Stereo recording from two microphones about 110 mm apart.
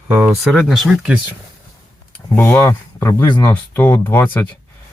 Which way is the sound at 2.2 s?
25° left (ahead or behind).